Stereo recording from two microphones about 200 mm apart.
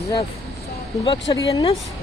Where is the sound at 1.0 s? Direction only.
15° left (ahead or behind).